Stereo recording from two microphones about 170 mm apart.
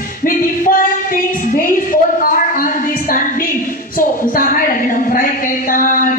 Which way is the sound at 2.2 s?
55° left (ahead or behind).